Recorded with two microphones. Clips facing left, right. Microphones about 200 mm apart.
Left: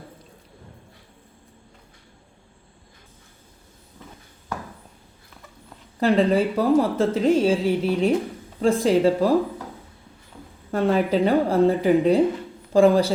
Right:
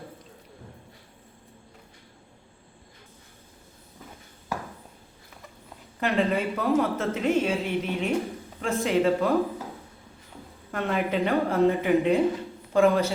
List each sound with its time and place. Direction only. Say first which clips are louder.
6.0 s a woman's voice: left 6 dB; 35° left (ahead or behind)
10.7 s a woman's voice: left 7 dB; 35° left (ahead or behind)